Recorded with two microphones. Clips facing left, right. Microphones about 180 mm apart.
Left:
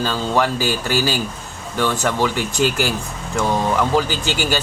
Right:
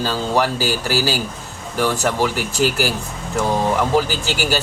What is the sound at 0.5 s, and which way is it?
Speech, 5° right (ahead or behind).